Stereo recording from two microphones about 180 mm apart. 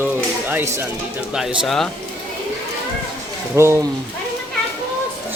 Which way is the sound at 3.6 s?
15° right (ahead or behind).